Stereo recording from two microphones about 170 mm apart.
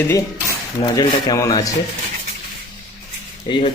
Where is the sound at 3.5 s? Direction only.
30° left (ahead or behind).